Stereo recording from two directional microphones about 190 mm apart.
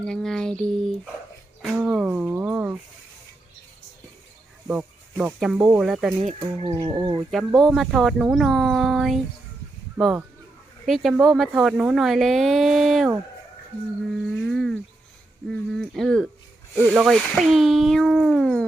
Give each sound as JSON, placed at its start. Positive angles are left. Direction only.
{"t": 0.0, "sound": "speech", "side_deg": 5}
{"t": 1.6, "sound": "a sound", "side_deg": 0}
{"t": 4.7, "sound": "speech", "side_deg": -5}
{"t": 6.2, "sound": "speech", "side_deg": -35}
{"t": 6.7, "sound": "speech", "side_deg": -20}
{"t": 7.2, "sound": "speech", "side_deg": 0}
{"t": 14.4, "sound": "speech", "side_deg": 0}